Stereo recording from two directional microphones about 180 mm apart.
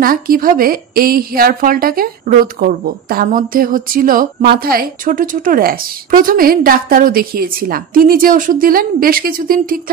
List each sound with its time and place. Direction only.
0.0 s a woman's voice: 50° right (ahead or behind)